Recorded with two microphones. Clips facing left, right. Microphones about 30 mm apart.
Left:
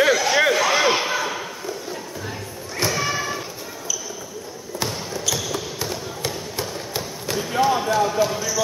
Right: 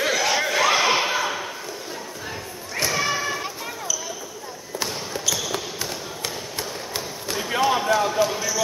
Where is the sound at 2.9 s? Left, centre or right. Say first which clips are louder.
Even; centre.